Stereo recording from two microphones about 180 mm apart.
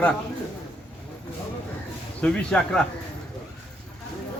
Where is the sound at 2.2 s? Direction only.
5° left (ahead or behind).